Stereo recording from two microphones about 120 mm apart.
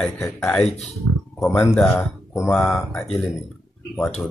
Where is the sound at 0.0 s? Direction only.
5° left (ahead or behind).